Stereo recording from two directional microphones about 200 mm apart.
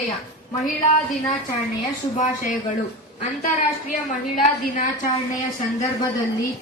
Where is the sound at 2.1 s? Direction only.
40° left (ahead or behind).